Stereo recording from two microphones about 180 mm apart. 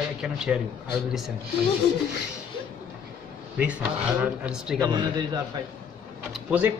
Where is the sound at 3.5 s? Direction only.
5° right (ahead or behind).